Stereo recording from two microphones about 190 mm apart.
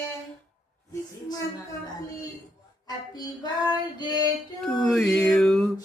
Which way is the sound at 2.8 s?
20° left (ahead or behind).